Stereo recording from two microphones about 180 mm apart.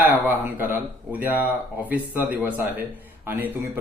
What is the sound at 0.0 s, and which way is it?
Speech, 10° right (ahead or behind).